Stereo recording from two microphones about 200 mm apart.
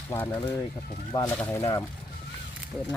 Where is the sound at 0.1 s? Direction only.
10° left (ahead or behind).